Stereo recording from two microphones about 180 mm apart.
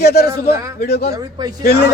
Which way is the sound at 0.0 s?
60° left (ahead or behind).